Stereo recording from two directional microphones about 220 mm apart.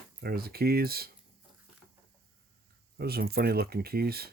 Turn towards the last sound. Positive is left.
turn(degrees=-45)  # may be behind; listen again after turning